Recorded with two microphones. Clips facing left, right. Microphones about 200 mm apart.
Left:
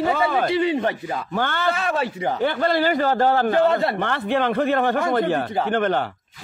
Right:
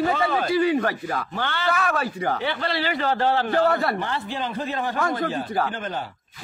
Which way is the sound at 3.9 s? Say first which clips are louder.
Left 6 dB; 60° left (ahead or behind).